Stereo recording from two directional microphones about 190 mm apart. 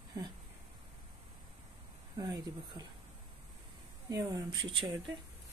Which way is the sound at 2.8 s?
20° right (ahead or behind).